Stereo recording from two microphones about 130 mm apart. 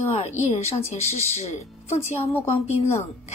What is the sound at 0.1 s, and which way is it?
Speech, 55° left (ahead or behind).